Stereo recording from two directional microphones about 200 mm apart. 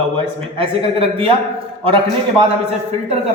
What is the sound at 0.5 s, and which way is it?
Speech, 30° right (ahead or behind).